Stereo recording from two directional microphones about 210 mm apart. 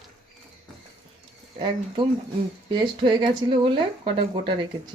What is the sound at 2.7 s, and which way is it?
Speech, 20° right (ahead or behind).